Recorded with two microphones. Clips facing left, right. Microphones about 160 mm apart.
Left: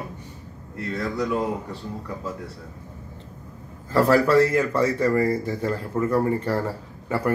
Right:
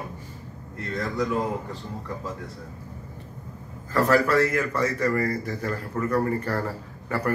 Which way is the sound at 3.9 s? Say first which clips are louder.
Left 3 dB; 30° left (ahead or behind).